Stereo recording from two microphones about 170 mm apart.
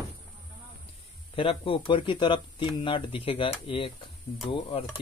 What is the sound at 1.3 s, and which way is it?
Speech, 30° left (ahead or behind).